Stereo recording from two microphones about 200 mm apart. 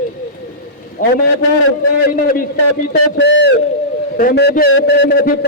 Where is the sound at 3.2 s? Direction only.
65° left (ahead or behind).